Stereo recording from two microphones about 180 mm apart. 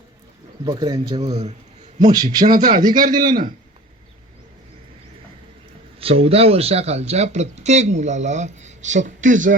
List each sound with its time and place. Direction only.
0.6 s speech: 25° right (ahead or behind)
2.0 s speech: 25° right (ahead or behind)
2.6 s a man's voice: 50° right (ahead or behind)
6.0 s speech: 30° right (ahead or behind)